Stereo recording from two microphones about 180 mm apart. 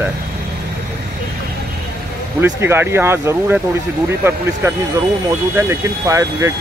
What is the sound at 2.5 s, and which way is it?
Speech, 15° right (ahead or behind).